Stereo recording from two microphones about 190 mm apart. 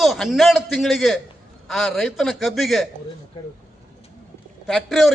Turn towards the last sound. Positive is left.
turn(degrees=0)  # may be behind; listen again after turning